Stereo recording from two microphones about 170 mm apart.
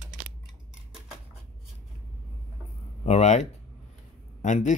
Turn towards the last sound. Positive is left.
turn(degrees=45)  # may be behind; listen again after turning